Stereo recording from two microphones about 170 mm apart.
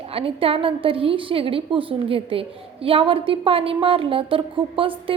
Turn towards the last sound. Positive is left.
turn(degrees=-30)  # may be behind; listen again after turning